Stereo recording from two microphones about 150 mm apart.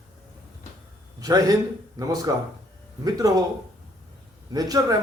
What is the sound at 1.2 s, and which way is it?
A man's voice, 25° right (ahead or behind).